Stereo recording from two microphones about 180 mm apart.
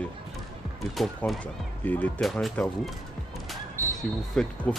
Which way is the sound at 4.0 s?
5° left (ahead or behind).